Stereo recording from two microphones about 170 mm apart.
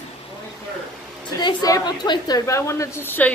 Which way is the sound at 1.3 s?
20° left (ahead or behind).